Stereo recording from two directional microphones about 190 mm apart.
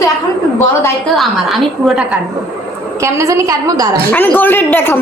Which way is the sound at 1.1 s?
Centre (ahead or behind).